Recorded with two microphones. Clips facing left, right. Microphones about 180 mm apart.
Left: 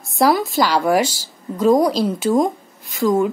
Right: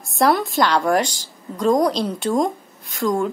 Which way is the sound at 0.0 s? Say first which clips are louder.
Left 2 dB; centre (ahead or behind).